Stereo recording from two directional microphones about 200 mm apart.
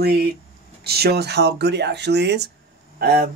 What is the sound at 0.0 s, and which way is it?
Speech, 50° right (ahead or behind).